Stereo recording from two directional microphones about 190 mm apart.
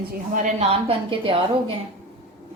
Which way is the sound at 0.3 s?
35° right (ahead or behind).